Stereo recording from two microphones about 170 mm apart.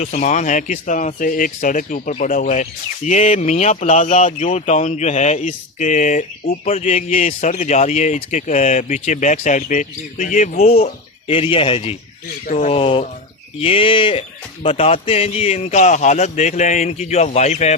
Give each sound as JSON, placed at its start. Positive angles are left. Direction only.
{"t": 0.0, "sound": "speech", "side_deg": 45}